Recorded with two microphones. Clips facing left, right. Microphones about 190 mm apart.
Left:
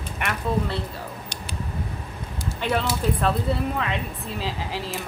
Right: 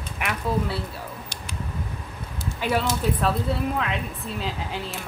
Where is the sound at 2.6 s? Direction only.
5° right (ahead or behind).